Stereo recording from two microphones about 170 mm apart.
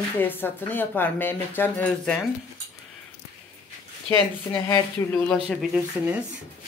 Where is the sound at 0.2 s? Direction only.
10° left (ahead or behind).